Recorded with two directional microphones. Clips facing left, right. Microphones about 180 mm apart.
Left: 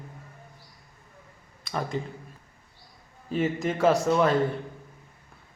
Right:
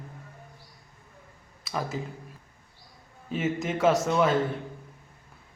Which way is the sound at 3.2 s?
Centre (ahead or behind).